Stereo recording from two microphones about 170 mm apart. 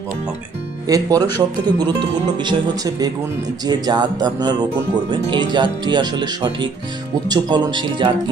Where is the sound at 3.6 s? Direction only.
25° right (ahead or behind).